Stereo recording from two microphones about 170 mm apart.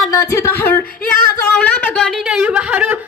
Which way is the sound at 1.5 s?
5° left (ahead or behind).